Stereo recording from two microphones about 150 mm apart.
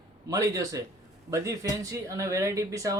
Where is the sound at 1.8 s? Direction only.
20° right (ahead or behind).